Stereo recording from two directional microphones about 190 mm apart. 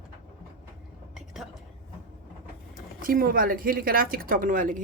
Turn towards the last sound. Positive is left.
turn(degrees=-45)  # may be behind; listen again after turning